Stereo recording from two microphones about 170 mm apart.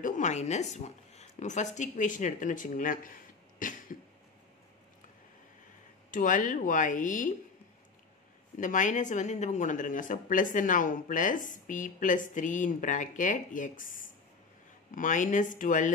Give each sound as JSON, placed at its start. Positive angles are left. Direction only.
{"t": 0.0, "sound": "speech", "side_deg": 45}
{"t": 6.1, "sound": "speech", "side_deg": 50}
{"t": 8.5, "sound": "speech", "side_deg": 50}